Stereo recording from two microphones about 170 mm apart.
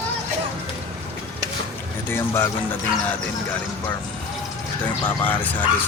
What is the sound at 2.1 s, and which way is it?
Speech, 15° left (ahead or behind).